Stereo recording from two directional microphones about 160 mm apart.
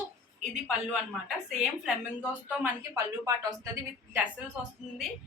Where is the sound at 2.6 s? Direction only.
20° right (ahead or behind).